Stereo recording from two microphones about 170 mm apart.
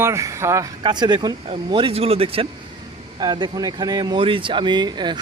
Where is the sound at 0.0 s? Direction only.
15° right (ahead or behind).